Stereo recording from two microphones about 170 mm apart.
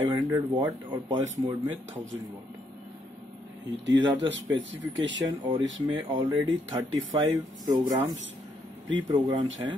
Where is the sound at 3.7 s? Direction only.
90° right.